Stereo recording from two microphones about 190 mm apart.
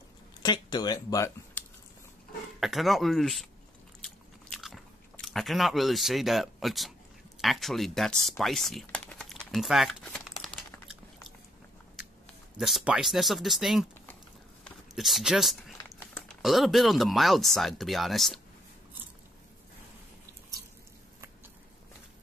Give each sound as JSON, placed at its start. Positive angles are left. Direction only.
{"t": 0.4, "sound": "speech", "side_deg": 20}
{"t": 2.6, "sound": "speech", "side_deg": 0}
{"t": 4.0, "sound": "biting", "side_deg": 0}
{"t": 7.4, "sound": "speech", "side_deg": 0}
{"t": 12.5, "sound": "speech", "side_deg": 0}
{"t": 14.6, "sound": "a sound", "side_deg": 0}
{"t": 16.0, "sound": "a sound", "side_deg": 10}
{"t": 16.4, "sound": "speech", "side_deg": 0}